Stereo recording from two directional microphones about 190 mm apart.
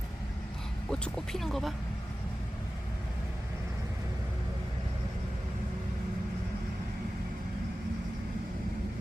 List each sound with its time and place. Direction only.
0.9 s speech: 5° left (ahead or behind)